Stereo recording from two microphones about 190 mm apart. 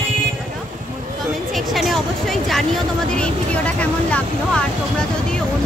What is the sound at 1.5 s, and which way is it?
Speech, centre (ahead or behind).